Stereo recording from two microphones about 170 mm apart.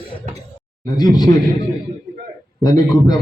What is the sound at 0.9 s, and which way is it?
Speech, 25° left (ahead or behind).